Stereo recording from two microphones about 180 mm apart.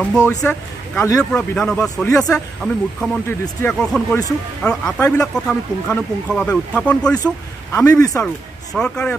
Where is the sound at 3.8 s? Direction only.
5° left (ahead or behind).